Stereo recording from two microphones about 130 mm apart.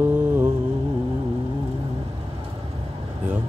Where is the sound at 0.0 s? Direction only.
15° right (ahead or behind).